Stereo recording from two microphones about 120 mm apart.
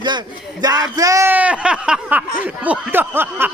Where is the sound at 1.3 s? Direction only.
10° right (ahead or behind).